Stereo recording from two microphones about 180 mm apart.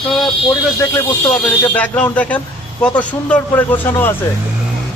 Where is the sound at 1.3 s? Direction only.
10° left (ahead or behind).